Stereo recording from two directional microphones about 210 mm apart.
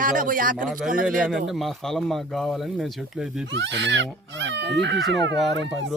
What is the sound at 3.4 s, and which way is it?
Speech, 55° right (ahead or behind).